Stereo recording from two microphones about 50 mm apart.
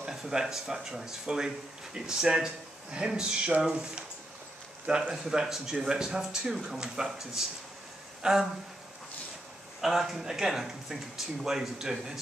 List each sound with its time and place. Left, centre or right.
0.0 s speech: centre
4.8 s speech: centre
9.8 s speech: centre